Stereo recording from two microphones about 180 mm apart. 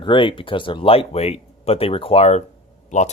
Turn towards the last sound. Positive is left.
turn(degrees=40)  # may be behind; listen again after turning